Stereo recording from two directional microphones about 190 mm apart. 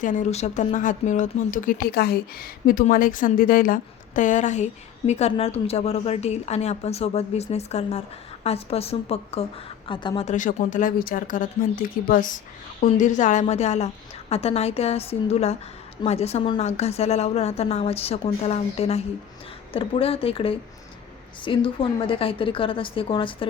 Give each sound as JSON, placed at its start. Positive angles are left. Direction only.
{"t": 0.0, "sound": "speech", "side_deg": 40}
{"t": 10.2, "sound": "a woman's voice", "side_deg": 45}